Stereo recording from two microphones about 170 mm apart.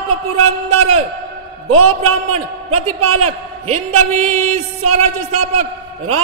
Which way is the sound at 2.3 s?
40° right (ahead or behind).